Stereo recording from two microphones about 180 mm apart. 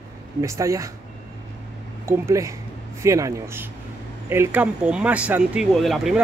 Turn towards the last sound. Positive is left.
turn(degrees=0)  # may be behind; listen again after turning